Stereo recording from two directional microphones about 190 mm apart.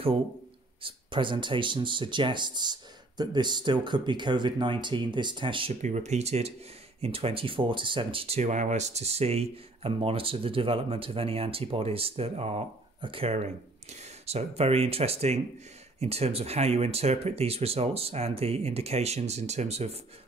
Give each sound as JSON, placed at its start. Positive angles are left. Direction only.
{"t": 0.8, "sound": "speech", "side_deg": -25}
{"t": 5.8, "sound": "speech", "side_deg": -40}